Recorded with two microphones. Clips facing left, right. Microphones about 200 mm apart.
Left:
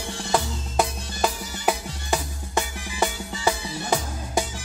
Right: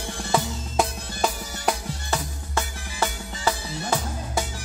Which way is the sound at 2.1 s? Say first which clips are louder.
Left 3 dB; 15° left (ahead or behind).